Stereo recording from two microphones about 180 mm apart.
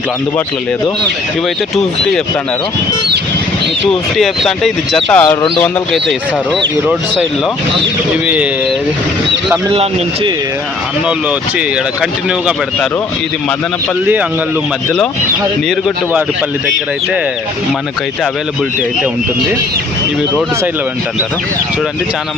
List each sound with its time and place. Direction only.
3.8 s speech: centre (ahead or behind)
8.1 s speech: 5° right (ahead or behind)
9.7 s speech: 35° right (ahead or behind)
12.3 s speech: 5° right (ahead or behind)